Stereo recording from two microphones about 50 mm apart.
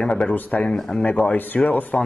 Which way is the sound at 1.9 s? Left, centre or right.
Centre.